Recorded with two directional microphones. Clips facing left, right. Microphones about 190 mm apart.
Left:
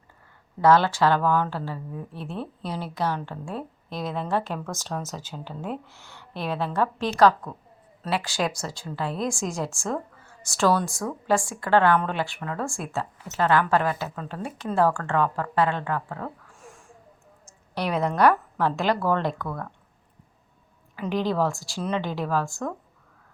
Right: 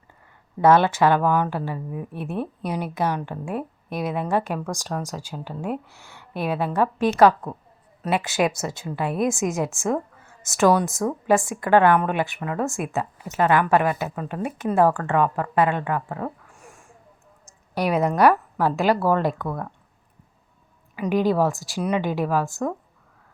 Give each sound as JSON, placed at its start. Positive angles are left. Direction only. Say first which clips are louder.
{"t": 0.6, "sound": "a woman's voice", "louder": "right 2 dB", "side_deg": -20}
{"t": 16.6, "sound": "a sound", "louder": "even", "side_deg": 0}
{"t": 17.7, "sound": "a woman's voice", "louder": "right 3 dB", "side_deg": -10}
{"t": 20.9, "sound": "a woman's voice", "louder": "right 5 dB", "side_deg": -10}